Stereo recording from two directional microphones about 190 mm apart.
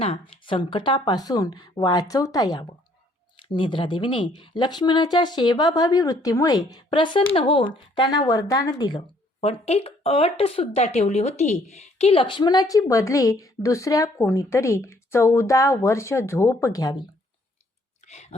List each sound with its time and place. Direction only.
0.0 s speech: 30° left (ahead or behind)
18.0 s clicking: 35° left (ahead or behind)